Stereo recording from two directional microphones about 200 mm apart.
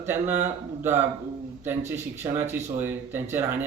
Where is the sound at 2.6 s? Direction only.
35° right (ahead or behind).